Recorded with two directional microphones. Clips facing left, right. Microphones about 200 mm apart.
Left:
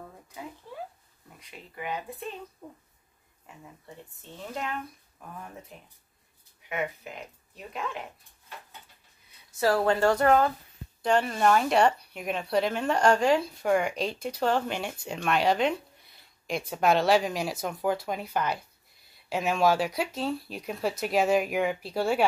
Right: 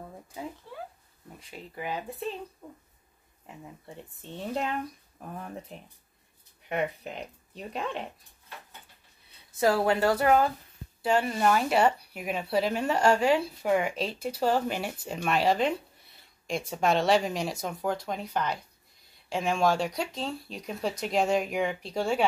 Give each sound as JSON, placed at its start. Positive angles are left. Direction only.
{"t": 1.8, "sound": "speech", "side_deg": -30}
{"t": 2.6, "sound": "speech", "side_deg": 10}
{"t": 5.7, "sound": "speech", "side_deg": -30}
{"t": 9.6, "sound": "speech", "side_deg": -10}